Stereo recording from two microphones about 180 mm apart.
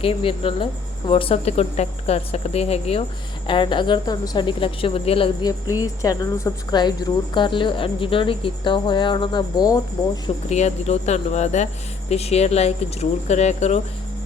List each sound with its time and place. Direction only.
0.0 s speech: 30° left (ahead or behind)
10.2 s speech: 40° left (ahead or behind)